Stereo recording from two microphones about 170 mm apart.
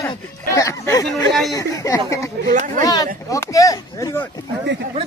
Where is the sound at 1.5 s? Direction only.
20° left (ahead or behind).